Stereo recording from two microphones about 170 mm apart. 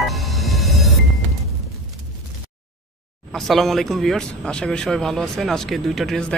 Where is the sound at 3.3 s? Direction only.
Centre (ahead or behind).